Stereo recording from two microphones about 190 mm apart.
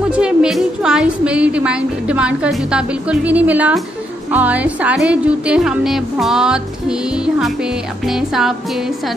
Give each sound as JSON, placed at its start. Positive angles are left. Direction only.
{"t": 0.1, "sound": "speech", "side_deg": -5}